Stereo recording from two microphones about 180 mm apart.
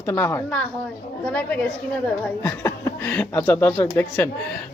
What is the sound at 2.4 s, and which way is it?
A man's voice, 15° left (ahead or behind).